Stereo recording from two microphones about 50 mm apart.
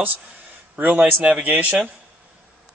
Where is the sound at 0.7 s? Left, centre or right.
Right.